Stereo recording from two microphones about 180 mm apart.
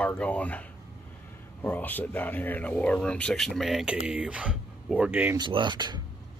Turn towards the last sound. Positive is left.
turn(degrees=-25)  # may be behind; listen again after turning